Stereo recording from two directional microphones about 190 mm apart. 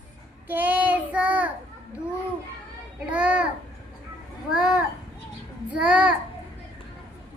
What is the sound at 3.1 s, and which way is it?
Child singing, 5° right (ahead or behind).